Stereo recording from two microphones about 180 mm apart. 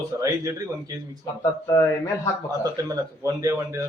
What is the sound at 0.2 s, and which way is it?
Speech, 20° right (ahead or behind).